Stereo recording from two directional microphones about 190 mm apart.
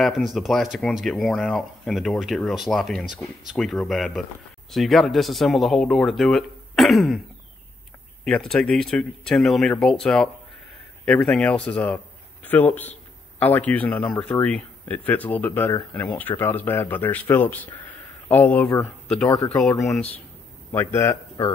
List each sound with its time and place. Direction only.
0.0 s speech: centre (ahead or behind)
8.3 s speech: 5° left (ahead or behind)
17.8 s a sound: 10° left (ahead or behind)
19.2 s speech: 20° left (ahead or behind)
19.5 s a man's voice: 5° left (ahead or behind)